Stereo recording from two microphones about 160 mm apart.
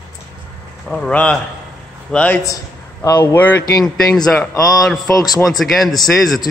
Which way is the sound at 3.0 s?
20° left (ahead or behind).